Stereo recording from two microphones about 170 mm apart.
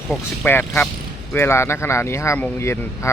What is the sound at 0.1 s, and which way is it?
Speech, 5° left (ahead or behind).